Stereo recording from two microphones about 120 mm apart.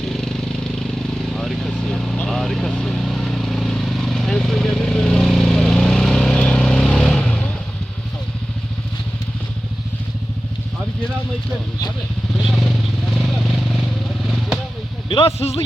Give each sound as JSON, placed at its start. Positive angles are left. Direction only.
{"t": 0.0, "sound": "vehicle", "side_deg": 5}
{"t": 12.4, "sound": "vehicle", "side_deg": 0}
{"t": 15.1, "sound": "a sound", "side_deg": 55}